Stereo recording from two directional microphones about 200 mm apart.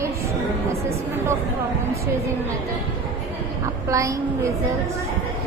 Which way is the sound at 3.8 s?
15° right (ahead or behind).